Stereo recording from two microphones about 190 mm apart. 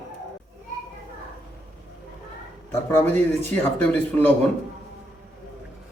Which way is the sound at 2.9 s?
10° left (ahead or behind).